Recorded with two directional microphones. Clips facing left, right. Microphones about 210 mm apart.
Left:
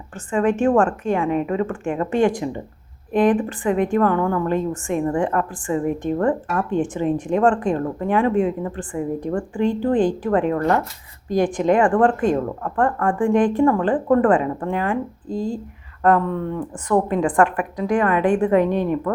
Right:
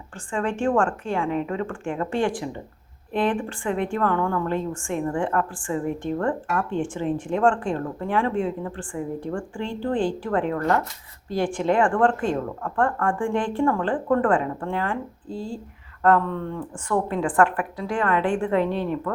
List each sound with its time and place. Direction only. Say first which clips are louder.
0.3 s a woman's voice: left 6 dB; 20° left (ahead or behind)